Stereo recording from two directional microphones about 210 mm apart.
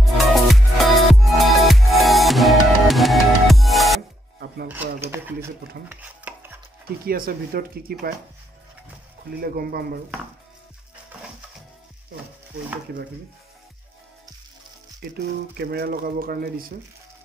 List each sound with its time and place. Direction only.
0.0 s music: centre (ahead or behind)
4.6 s a sound: 10° right (ahead or behind)
5.9 s chopping: 10° right (ahead or behind)
7.1 s speech: 45° right (ahead or behind)
9.4 s speech: 45° right (ahead or behind)
15.1 s speech: 50° right (ahead or behind)